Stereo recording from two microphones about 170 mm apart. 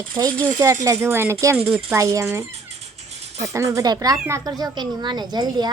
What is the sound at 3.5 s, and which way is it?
Speech, 20° right (ahead or behind).